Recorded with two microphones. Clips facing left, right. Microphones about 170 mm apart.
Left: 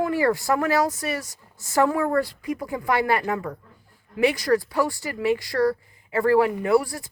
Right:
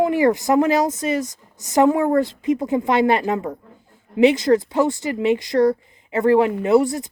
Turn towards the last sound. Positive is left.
turn(degrees=-20)  # may be behind; listen again after turning